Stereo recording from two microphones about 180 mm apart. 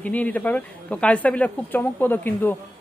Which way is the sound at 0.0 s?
10° left (ahead or behind).